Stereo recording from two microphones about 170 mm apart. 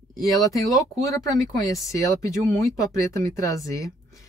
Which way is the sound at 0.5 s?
20° left (ahead or behind).